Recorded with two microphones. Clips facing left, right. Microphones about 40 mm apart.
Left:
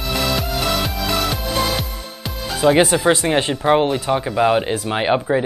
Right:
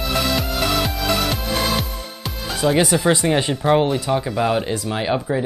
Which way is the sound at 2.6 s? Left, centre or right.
Centre.